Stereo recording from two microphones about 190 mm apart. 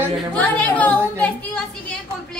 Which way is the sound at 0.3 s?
5° left (ahead or behind).